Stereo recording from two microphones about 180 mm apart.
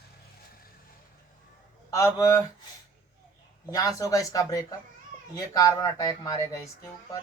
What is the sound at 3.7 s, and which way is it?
Speech, 20° left (ahead or behind).